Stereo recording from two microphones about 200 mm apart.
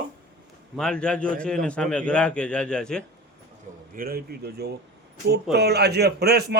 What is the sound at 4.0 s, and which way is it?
A man's voice, 50° right (ahead or behind).